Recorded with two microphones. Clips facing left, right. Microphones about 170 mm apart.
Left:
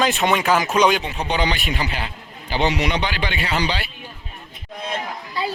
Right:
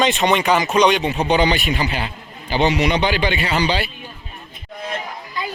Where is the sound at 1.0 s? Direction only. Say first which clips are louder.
Right 7 dB; 90° right.